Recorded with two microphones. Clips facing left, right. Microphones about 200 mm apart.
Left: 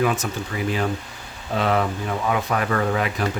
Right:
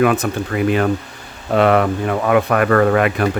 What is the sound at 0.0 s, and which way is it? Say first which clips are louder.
Speech: right 7 dB; 60° right (ahead or behind).